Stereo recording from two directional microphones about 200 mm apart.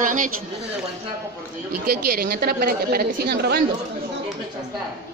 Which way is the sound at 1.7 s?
50° right (ahead or behind).